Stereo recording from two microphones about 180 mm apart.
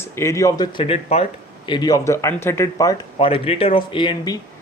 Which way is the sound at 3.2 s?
30° left (ahead or behind).